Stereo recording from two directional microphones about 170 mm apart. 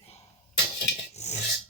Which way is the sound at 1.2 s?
40° left (ahead or behind).